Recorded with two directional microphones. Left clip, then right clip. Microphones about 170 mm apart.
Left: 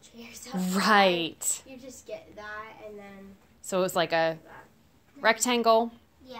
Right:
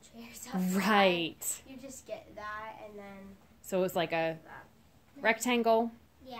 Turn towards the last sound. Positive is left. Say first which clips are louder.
# left 5 dB
turn(degrees=5)  # may be behind; listen again after turning